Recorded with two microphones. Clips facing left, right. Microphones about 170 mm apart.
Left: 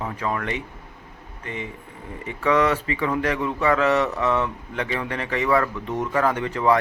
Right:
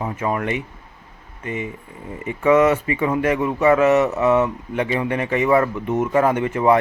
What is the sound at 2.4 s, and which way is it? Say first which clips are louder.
Speech: right 5 dB; 20° right (ahead or behind).